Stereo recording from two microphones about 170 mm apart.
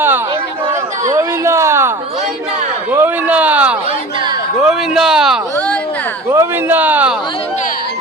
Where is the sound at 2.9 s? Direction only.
10° right (ahead or behind).